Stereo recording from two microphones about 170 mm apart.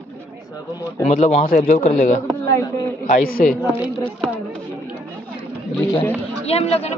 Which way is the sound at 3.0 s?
50° left (ahead or behind).